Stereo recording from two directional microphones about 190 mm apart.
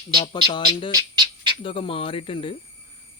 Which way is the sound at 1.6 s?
25° left (ahead or behind).